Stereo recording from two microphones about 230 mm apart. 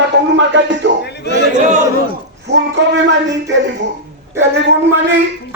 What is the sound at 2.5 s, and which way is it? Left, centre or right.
Music, right.